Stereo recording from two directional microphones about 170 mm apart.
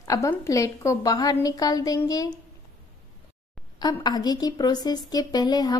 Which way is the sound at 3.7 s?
25° left (ahead or behind).